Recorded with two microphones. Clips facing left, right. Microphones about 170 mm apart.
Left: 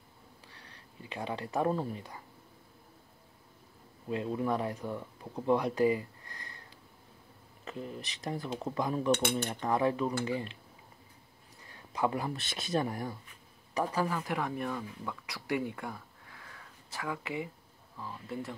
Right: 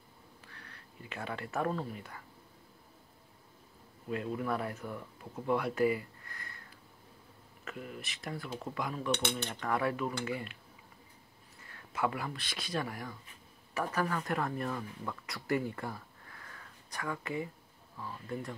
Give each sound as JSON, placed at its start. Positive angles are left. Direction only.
{"t": 1.0, "sound": "speech", "side_deg": 20}
{"t": 4.1, "sound": "speech", "side_deg": 25}
{"t": 7.6, "sound": "speech", "side_deg": 30}
{"t": 9.2, "sound": "speech", "side_deg": 10}
{"t": 9.6, "sound": "speech", "side_deg": 25}
{"t": 11.7, "sound": "a sound", "side_deg": 15}
{"t": 12.1, "sound": "speech", "side_deg": 25}
{"t": 13.7, "sound": "speech", "side_deg": 10}